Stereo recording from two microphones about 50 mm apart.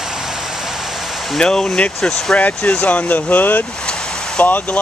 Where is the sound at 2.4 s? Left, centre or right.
Left.